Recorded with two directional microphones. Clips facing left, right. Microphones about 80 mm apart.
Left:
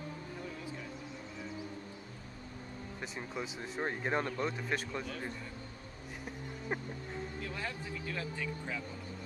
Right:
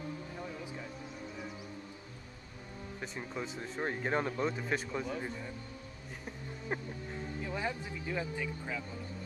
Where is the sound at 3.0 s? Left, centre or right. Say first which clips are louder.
Right 1 dB; centre.